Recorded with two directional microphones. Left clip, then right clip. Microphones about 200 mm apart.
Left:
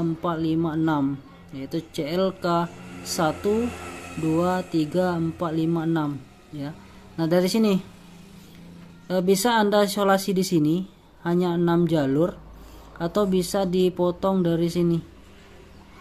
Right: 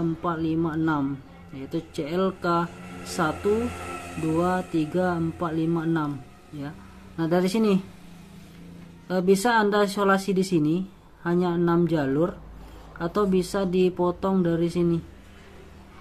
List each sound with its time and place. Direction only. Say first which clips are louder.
0.2 s speech: left 2 dB; 15° left (ahead or behind)
4.4 s speech: even; 15° left (ahead or behind)
7.2 s speech: left 2 dB; 10° left (ahead or behind)
9.0 s speech: even; 10° left (ahead or behind)